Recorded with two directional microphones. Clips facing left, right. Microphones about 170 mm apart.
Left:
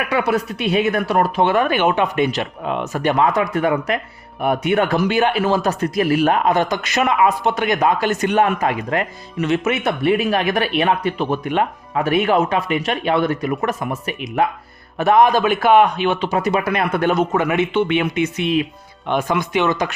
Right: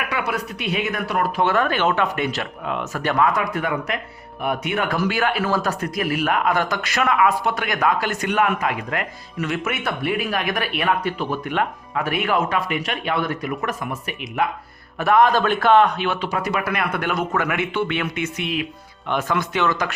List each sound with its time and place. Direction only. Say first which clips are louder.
0.1 s speech: left 7 dB; 30° left (ahead or behind)
14.9 s speech: left 3 dB; 20° left (ahead or behind)